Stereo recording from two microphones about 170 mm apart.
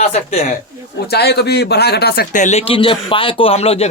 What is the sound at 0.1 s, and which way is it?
Speech, 35° left (ahead or behind).